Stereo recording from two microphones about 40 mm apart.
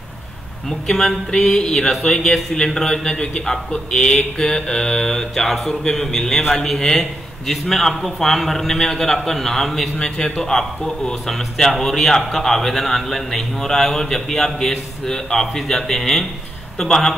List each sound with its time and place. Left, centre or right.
0.7 s speech: centre
9.9 s a man's voice: left